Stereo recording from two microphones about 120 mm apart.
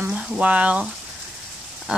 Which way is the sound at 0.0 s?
10° right (ahead or behind).